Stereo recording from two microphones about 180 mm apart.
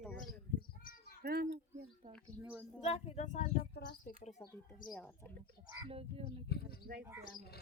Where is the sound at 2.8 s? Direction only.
35° left (ahead or behind).